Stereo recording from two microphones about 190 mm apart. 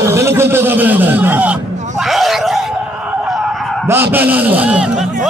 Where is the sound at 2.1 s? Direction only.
Centre (ahead or behind).